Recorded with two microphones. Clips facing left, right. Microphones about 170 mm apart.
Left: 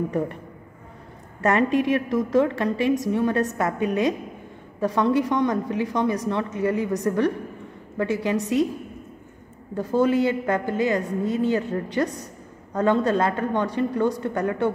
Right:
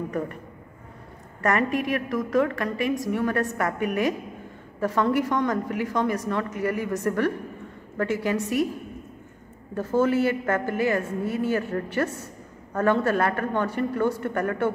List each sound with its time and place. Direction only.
1.4 s a woman's voice: 25° left (ahead or behind)
9.8 s a woman's voice: 15° left (ahead or behind)